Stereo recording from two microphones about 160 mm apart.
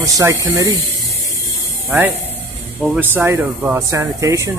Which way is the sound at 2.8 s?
10° right (ahead or behind).